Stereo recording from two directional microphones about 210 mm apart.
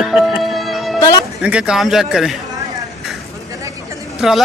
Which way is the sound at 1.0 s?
20° left (ahead or behind).